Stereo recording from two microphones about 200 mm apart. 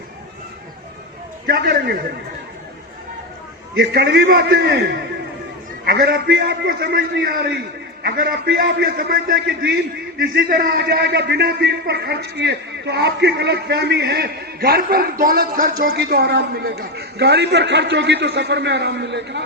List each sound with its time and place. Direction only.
1.5 s a man's voice: 50° right (ahead or behind)
3.8 s a man's voice: 50° right (ahead or behind)